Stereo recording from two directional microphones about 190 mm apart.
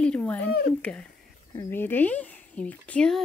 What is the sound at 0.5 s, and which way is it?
Speech, 55° left (ahead or behind).